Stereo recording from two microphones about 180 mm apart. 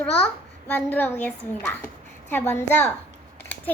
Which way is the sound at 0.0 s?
10° left (ahead or behind).